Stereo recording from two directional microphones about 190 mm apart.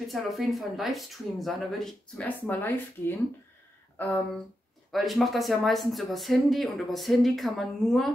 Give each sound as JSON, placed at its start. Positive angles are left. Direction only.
{"t": 0.1, "sound": "speech", "side_deg": 0}